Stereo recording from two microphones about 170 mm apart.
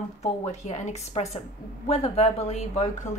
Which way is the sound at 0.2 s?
40° left (ahead or behind).